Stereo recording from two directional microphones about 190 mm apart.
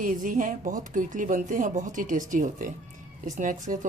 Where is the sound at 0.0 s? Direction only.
45° right (ahead or behind).